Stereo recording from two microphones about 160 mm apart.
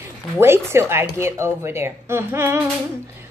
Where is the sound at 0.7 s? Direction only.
15° right (ahead or behind).